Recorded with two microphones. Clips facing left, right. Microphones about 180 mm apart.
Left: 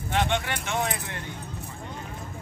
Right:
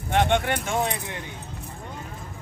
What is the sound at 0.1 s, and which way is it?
Speech, 50° right (ahead or behind).